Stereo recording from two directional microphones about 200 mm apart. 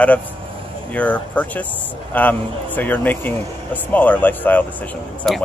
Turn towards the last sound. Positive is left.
turn(degrees=0)  # may be behind; listen again after turning